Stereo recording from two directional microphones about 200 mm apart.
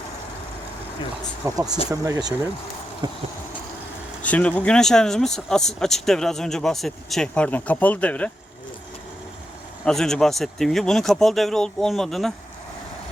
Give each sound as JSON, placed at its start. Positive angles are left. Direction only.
{"t": 1.5, "sound": "speech", "side_deg": -15}
{"t": 4.2, "sound": "speech", "side_deg": 5}
{"t": 9.8, "sound": "speech", "side_deg": 0}